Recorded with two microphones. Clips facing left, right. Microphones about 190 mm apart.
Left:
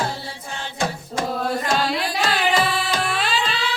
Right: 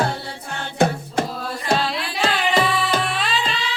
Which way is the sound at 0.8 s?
60° right (ahead or behind).